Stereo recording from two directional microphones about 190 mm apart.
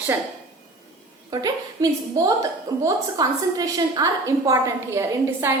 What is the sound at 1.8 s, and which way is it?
A woman's voice, 15° right (ahead or behind).